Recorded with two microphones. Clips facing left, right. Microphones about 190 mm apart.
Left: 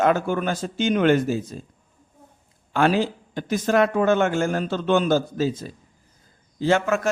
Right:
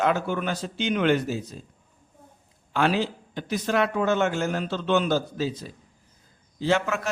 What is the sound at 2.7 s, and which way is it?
A man's voice, 45° left (ahead or behind).